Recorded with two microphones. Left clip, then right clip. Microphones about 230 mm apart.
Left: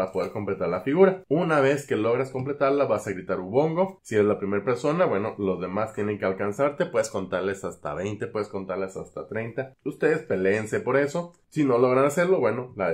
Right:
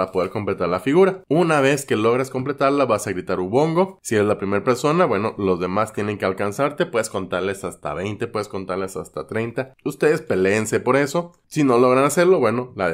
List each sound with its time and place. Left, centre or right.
0.0 s speech: right
8.3 s speech: right